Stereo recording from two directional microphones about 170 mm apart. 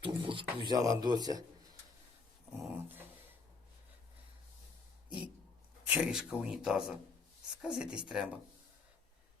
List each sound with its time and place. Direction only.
0.0 s speech: 30° right (ahead or behind)
2.7 s dog: 10° right (ahead or behind)
5.0 s a sound: 5° right (ahead or behind)
5.9 s a man's voice: 5° right (ahead or behind)